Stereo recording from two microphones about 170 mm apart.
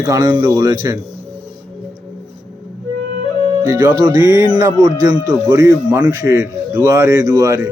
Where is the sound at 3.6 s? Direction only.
20° right (ahead or behind).